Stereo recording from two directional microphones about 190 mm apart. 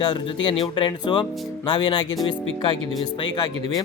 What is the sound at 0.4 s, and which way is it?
Speech, 25° left (ahead or behind).